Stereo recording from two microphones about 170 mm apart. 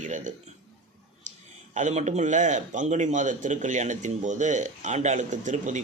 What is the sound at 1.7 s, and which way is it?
A man's voice, 45° right (ahead or behind).